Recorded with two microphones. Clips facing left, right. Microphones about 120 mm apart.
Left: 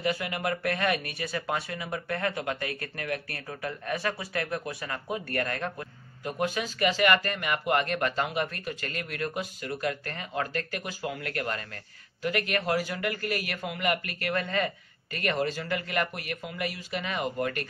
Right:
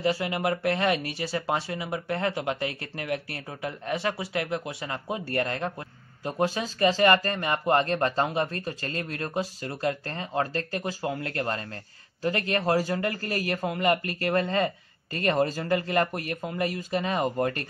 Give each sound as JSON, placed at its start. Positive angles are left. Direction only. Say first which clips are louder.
{"t": 0.0, "sound": "a man's voice", "louder": "right 4 dB", "side_deg": -25}